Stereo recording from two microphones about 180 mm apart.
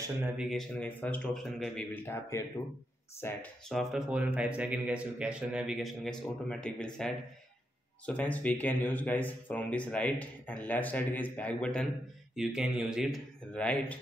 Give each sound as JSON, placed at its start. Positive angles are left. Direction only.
{"t": 0.5, "sound": "speech", "side_deg": 5}
{"t": 2.0, "sound": "speech", "side_deg": 15}
{"t": 3.7, "sound": "speech", "side_deg": -5}